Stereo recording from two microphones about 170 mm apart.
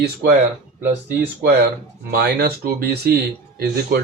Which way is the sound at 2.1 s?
70° right (ahead or behind).